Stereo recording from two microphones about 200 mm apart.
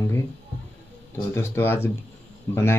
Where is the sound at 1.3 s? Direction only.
15° left (ahead or behind).